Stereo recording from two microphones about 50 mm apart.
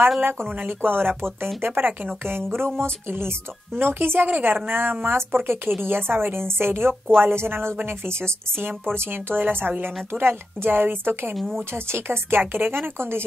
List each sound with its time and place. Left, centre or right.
0.2 s speech: right
0.5 s speech: right
11.3 s speech: centre
11.7 s speech: right